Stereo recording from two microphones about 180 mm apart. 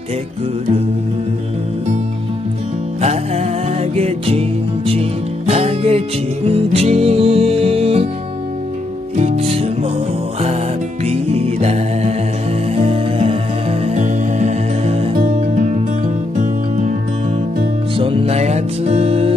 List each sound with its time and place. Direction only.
3.0 s music: 35° right (ahead or behind)
9.2 s music: 35° right (ahead or behind)
11.1 s music: 35° right (ahead or behind)
17.9 s music: 30° right (ahead or behind)